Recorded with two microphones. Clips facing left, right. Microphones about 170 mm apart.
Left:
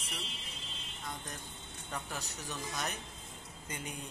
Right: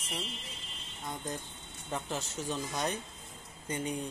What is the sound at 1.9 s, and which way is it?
Speech, 25° right (ahead or behind).